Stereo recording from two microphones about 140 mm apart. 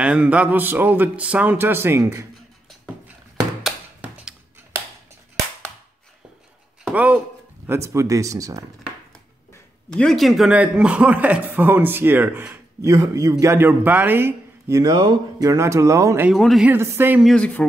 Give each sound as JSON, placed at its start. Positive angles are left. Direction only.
{"t": 0.0, "sound": "a man's voice", "side_deg": -10}
{"t": 3.6, "sound": "a sound", "side_deg": -5}
{"t": 6.8, "sound": "a sound", "side_deg": -10}
{"t": 7.6, "sound": "speech", "side_deg": -20}
{"t": 9.8, "sound": "a man's voice", "side_deg": 5}
{"t": 12.9, "sound": "speech", "side_deg": -25}
{"t": 16.3, "sound": "speech", "side_deg": 0}
{"t": 16.7, "sound": "a man's voice", "side_deg": -15}
{"t": 17.2, "sound": "speech", "side_deg": 5}